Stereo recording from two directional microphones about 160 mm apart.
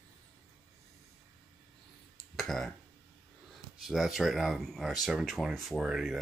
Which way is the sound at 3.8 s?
Centre (ahead or behind).